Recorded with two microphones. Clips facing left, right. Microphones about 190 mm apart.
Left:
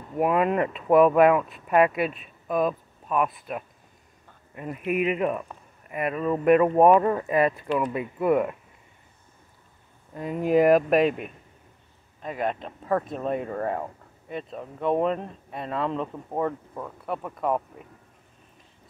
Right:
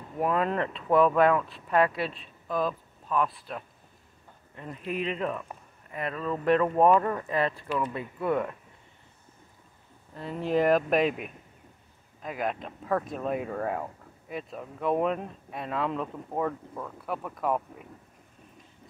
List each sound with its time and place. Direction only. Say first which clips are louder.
0.2 s speech: left 4 dB; 10° left (ahead or behind)
3.1 s speech: left 3 dB; 15° left (ahead or behind)
10.1 s speech: left 5 dB; 10° left (ahead or behind)